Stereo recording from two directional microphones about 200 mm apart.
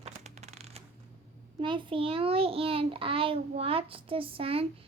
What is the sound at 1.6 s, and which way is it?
A child's voice, 25° right (ahead or behind).